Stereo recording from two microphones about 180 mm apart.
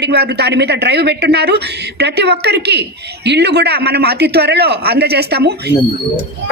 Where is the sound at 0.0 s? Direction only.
65° right (ahead or behind).